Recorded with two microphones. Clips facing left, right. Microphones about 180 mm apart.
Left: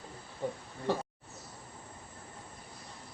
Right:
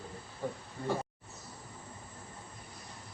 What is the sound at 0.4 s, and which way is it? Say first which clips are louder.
Speech: left 2 dB; 20° left (ahead or behind).